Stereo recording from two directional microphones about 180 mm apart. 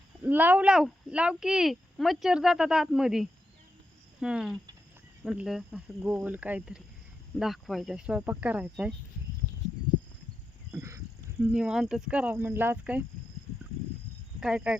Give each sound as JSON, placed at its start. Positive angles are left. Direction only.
{"t": 0.3, "sound": "speech", "side_deg": -10}
{"t": 10.7, "sound": "a sound", "side_deg": -15}
{"t": 11.3, "sound": "speech", "side_deg": -5}
{"t": 14.4, "sound": "speech", "side_deg": -5}